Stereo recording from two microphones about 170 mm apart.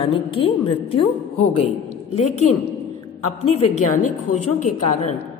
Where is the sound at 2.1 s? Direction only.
40° left (ahead or behind).